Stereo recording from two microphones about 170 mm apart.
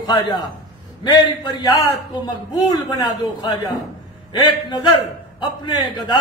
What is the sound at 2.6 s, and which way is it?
A man's voice, 25° left (ahead or behind).